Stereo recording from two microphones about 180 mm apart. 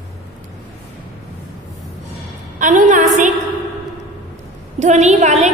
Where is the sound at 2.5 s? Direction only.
45° right (ahead or behind).